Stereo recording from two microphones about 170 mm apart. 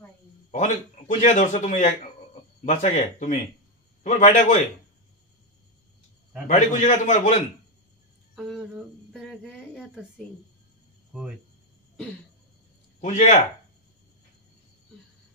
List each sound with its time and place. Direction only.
0.5 s a man's voice: 45° left (ahead or behind)
6.4 s a man's voice: 45° left (ahead or behind)
8.4 s cricket: centre (ahead or behind)
13.0 s a man's voice: 45° left (ahead or behind)